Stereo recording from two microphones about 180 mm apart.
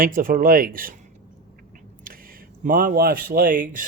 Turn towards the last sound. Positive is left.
turn(degrees=-50)  # may be behind; listen again after turning